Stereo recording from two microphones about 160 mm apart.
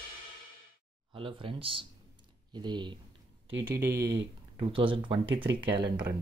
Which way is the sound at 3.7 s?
80° right.